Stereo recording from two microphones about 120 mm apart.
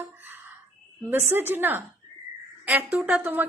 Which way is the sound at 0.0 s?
15° right (ahead or behind).